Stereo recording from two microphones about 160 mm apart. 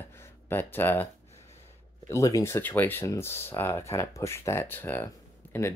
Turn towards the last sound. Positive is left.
turn(degrees=15)  # may be behind; listen again after turning